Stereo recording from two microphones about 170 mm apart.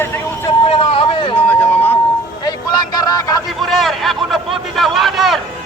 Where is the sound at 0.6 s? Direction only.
35° left (ahead or behind).